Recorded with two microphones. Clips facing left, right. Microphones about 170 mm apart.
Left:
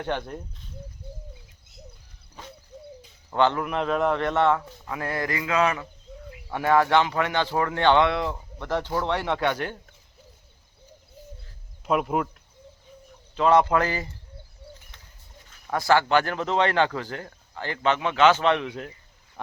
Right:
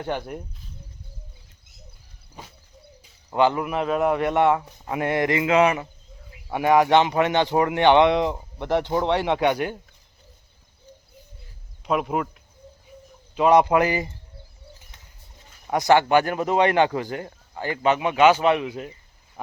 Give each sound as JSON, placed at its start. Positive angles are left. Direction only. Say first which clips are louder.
{"t": 0.0, "sound": "a man's voice", "louder": "right 1 dB", "side_deg": -10}
{"t": 3.2, "sound": "a man's voice", "louder": "right 2 dB", "side_deg": -10}
{"t": 11.9, "sound": "speech", "louder": "even", "side_deg": 0}
{"t": 13.3, "sound": "a man's voice", "louder": "right 3 dB", "side_deg": -15}
{"t": 15.6, "sound": "a man's voice", "louder": "right 3 dB", "side_deg": -20}